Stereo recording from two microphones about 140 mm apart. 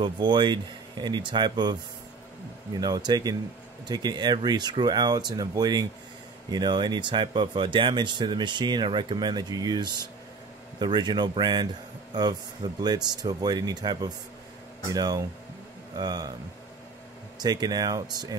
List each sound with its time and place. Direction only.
0.0 s speech: 35° right (ahead or behind)
17.4 s speech: 30° right (ahead or behind)